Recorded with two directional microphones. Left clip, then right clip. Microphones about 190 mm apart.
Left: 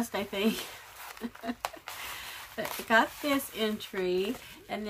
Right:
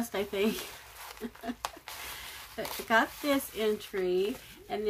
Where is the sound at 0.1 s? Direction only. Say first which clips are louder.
Right 2 dB; 15° left (ahead or behind).